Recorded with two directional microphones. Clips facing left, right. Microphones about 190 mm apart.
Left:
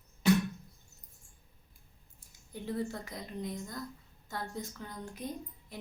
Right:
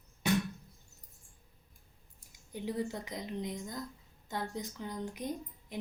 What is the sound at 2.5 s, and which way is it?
A woman's voice, 15° right (ahead or behind).